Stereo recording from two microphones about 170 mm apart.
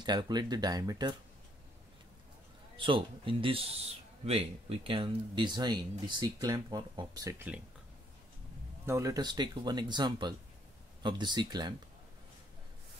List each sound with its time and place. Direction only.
0.0 s speech: 25° right (ahead or behind)
2.8 s speech: 30° right (ahead or behind); by 7.6 s 10° right (ahead or behind)
8.8 s speech: 20° right (ahead or behind)